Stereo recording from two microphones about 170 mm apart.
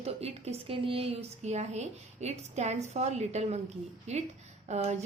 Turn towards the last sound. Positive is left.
turn(degrees=-40)  # may be behind; listen again after turning